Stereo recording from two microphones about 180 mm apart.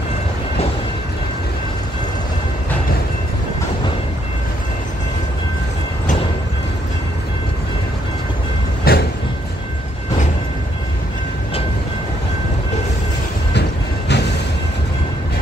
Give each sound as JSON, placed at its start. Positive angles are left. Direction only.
{"t": 8.9, "sound": "train", "side_deg": 60}
{"t": 13.6, "sound": "train", "side_deg": 70}